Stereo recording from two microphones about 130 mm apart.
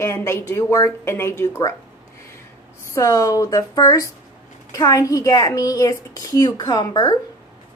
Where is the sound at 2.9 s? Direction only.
25° left (ahead or behind).